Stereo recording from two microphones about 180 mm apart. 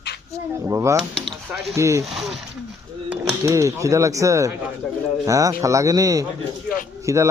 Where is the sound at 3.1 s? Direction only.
15° right (ahead or behind).